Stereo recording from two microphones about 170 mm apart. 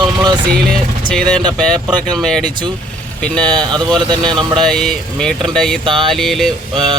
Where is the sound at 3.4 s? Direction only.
25° right (ahead or behind).